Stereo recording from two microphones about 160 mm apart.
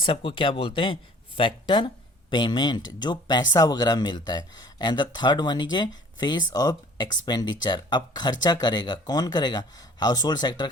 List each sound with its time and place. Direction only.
0.0 s speech: 35° left (ahead or behind)